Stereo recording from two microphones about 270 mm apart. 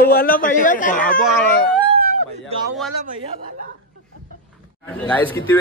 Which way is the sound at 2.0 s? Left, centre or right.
Right.